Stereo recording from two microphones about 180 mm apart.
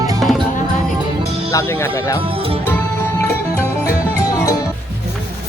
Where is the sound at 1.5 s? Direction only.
15° left (ahead or behind).